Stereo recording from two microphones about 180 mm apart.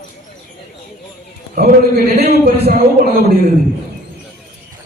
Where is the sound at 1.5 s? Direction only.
55° right (ahead or behind).